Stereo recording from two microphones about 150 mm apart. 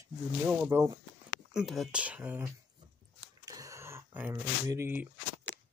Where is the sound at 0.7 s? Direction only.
20° right (ahead or behind).